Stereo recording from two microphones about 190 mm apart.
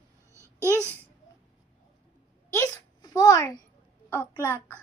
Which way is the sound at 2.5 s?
15° left (ahead or behind).